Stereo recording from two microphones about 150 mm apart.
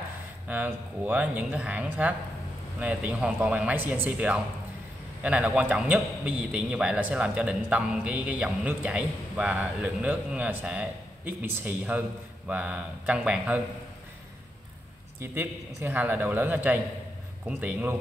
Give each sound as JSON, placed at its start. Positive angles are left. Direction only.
{"t": 0.5, "sound": "a man's voice", "side_deg": -10}
{"t": 15.1, "sound": "a man's voice", "side_deg": -15}